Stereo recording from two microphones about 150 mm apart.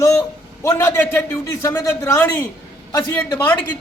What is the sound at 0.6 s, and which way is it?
A man's voice, 20° left (ahead or behind).